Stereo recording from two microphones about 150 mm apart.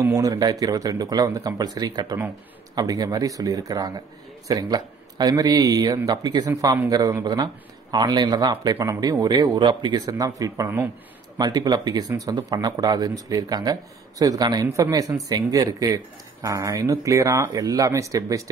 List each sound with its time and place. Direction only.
0.0 s speech: 20° right (ahead or behind)